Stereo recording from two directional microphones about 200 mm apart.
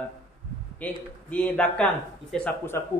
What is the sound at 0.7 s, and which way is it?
A man's voice, 5° left (ahead or behind).